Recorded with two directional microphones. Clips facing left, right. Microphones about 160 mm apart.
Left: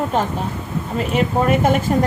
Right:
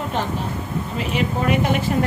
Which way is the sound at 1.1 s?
45° left (ahead or behind).